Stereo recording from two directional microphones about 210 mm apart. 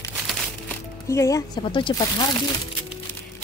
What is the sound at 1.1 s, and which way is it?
Speech, 15° left (ahead or behind).